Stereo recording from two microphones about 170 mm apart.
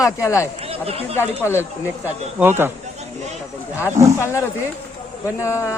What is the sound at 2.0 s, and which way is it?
Speech, 10° right (ahead or behind).